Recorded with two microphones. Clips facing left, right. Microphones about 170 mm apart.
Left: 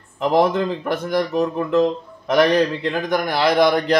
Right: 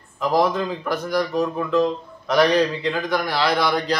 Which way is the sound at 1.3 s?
20° left (ahead or behind).